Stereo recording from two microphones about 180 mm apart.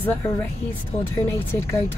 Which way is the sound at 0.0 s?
10° left (ahead or behind).